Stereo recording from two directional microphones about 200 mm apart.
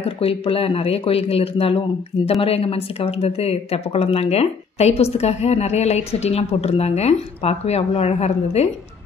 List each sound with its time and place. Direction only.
0.0 s speech: 30° left (ahead or behind)